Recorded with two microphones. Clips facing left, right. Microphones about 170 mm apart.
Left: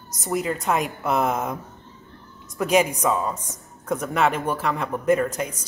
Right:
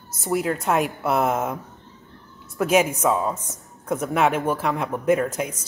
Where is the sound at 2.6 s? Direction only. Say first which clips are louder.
Right 1 dB; 10° right (ahead or behind).